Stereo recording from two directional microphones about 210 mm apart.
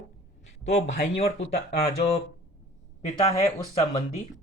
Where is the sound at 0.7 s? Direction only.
30° left (ahead or behind).